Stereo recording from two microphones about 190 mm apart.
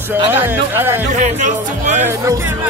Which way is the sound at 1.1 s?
40° right (ahead or behind).